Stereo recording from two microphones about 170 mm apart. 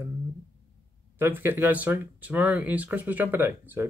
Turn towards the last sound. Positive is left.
turn(degrees=-10)  # may be behind; listen again after turning